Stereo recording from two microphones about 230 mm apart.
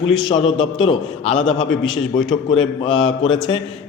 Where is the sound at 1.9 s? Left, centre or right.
Left.